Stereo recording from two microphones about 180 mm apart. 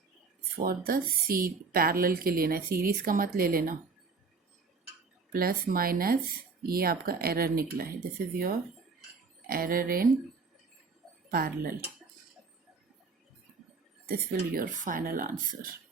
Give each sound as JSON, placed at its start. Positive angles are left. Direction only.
{"t": 0.5, "sound": "a woman's voice", "side_deg": -55}
{"t": 5.3, "sound": "a woman's voice", "side_deg": -55}
{"t": 9.5, "sound": "speech", "side_deg": -55}
{"t": 11.3, "sound": "a woman's voice", "side_deg": -55}
{"t": 14.1, "sound": "speech", "side_deg": -50}